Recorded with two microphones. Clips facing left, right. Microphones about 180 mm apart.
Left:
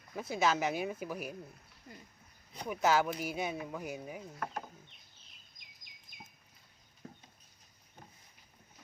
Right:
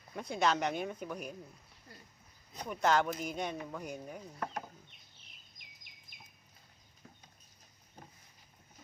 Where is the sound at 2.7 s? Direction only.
5° left (ahead or behind).